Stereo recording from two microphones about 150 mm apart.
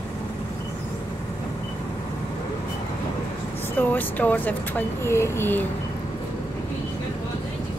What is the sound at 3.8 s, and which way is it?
Speech, 10° left (ahead or behind).